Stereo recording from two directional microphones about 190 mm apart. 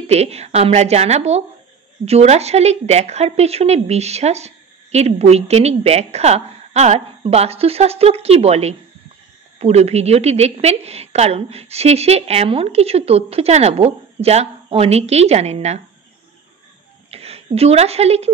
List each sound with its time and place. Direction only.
0.0 s speech: 35° right (ahead or behind)
17.1 s speech: 35° right (ahead or behind)